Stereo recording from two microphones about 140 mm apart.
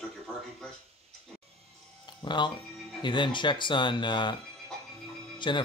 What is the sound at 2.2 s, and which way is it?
Speech, 35° left (ahead or behind).